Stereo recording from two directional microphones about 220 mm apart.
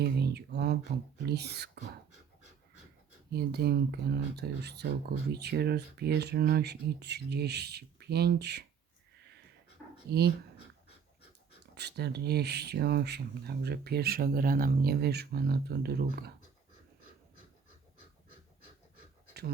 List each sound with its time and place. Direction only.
0.0 s speech: 45° right (ahead or behind)
3.3 s speech: 45° right (ahead or behind)
10.1 s speech: 45° right (ahead or behind)
11.7 s speech: 50° right (ahead or behind)